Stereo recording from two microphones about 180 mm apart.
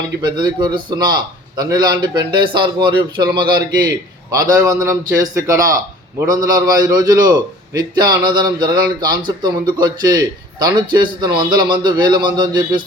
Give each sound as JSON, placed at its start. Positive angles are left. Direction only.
{"t": 0.2, "sound": "a man's voice", "side_deg": -25}